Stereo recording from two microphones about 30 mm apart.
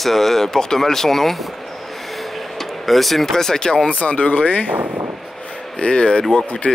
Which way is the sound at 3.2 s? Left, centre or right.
Centre.